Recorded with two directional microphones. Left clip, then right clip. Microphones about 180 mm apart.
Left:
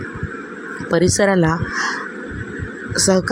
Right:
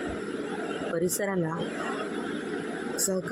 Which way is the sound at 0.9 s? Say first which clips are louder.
Left 15 dB; 45° left (ahead or behind).